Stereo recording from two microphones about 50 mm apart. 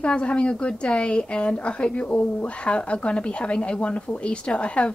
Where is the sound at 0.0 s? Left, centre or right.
Left.